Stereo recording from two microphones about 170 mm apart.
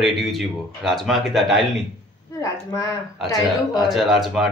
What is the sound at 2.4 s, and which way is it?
Speech, 20° left (ahead or behind).